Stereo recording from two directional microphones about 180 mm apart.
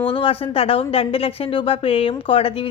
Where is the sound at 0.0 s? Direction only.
30° left (ahead or behind).